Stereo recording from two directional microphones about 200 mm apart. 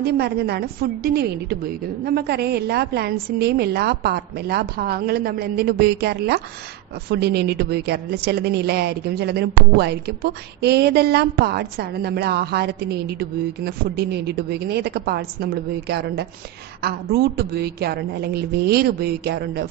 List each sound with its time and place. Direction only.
0.0 s a woman's voice: 55° right (ahead or behind)